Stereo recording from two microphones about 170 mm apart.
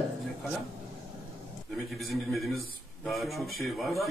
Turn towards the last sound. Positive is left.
turn(degrees=0)  # may be behind; listen again after turning